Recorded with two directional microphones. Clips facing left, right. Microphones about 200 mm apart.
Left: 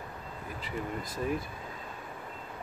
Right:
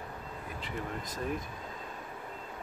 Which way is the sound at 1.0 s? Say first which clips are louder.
Left 3 dB; 45° right (ahead or behind).